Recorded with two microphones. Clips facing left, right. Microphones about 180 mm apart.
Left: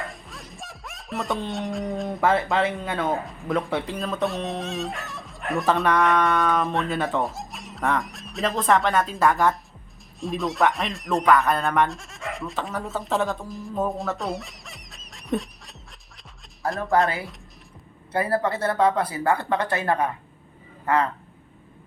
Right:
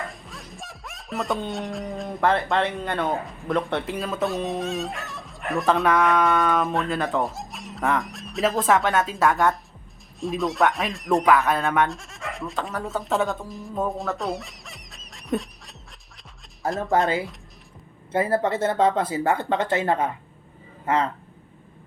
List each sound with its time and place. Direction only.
0.0 s music: centre (ahead or behind)
10.2 s speech: centre (ahead or behind)
18.1 s speech: 20° right (ahead or behind)